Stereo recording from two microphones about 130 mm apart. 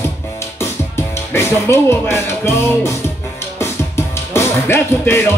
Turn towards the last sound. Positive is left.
turn(degrees=20)  # may be behind; listen again after turning